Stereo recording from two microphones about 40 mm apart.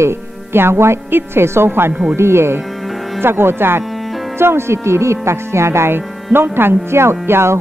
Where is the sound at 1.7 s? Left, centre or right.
Right.